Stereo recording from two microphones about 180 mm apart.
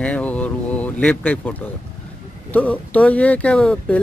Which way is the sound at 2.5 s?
10° left (ahead or behind).